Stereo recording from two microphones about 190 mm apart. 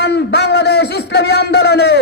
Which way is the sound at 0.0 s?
60° left (ahead or behind).